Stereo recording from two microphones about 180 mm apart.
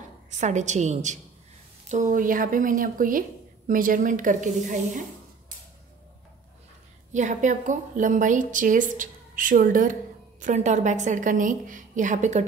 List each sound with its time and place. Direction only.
0.3 s a woman's voice: 40° right (ahead or behind)
7.1 s a woman's voice: 40° right (ahead or behind)